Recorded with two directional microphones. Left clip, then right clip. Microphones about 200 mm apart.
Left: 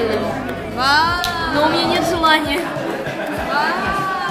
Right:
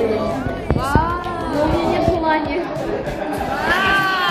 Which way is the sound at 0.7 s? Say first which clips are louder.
Left 5 dB; 90° left.